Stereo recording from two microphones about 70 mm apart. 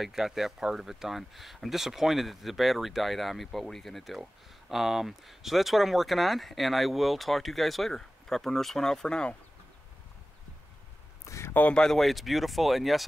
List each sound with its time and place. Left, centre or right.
0.0 s speech: centre
11.2 s a sound: left
11.7 s speech: centre